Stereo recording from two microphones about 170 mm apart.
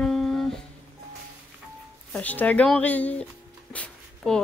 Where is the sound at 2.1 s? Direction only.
10° left (ahead or behind).